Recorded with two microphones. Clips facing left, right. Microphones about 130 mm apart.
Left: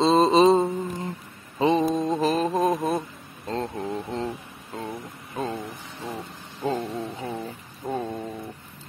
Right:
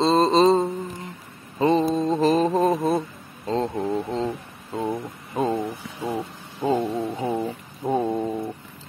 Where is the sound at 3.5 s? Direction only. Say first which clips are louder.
Right 5 dB; 10° right (ahead or behind).